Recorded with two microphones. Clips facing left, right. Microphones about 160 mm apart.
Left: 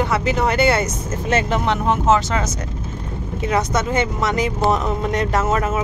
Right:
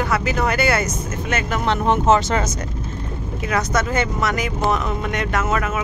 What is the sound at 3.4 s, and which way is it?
Speech, 25° left (ahead or behind).